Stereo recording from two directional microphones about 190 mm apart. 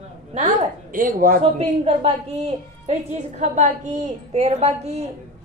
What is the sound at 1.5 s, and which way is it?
A woman's voice, 30° right (ahead or behind).